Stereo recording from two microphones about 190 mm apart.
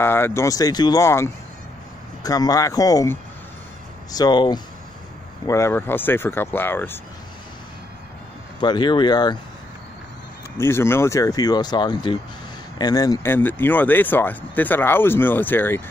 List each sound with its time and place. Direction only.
0.0 s speech: 10° left (ahead or behind)
8.5 s speech: 25° left (ahead or behind)
10.6 s speech: 15° left (ahead or behind)